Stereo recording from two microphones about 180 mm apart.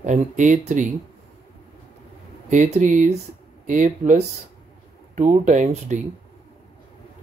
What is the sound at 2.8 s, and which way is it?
Speech, 45° right (ahead or behind).